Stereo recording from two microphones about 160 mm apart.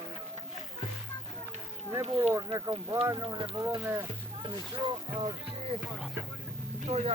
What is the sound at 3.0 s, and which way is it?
Speech, 30° right (ahead or behind).